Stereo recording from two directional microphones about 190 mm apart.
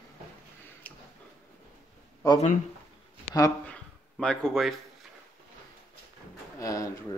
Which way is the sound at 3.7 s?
5° left (ahead or behind).